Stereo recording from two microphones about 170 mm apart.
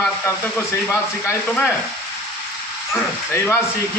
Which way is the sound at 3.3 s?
15° left (ahead or behind).